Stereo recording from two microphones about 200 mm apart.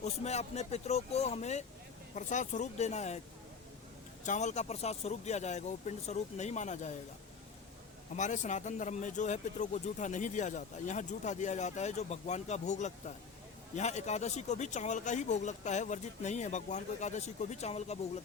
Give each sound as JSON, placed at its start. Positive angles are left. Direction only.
{"t": 0.0, "sound": "speech", "side_deg": 35}
{"t": 4.2, "sound": "speech", "side_deg": 35}
{"t": 8.1, "sound": "speech", "side_deg": 35}